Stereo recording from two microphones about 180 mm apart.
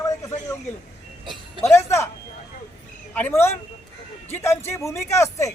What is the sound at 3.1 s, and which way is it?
Speech, 10° left (ahead or behind).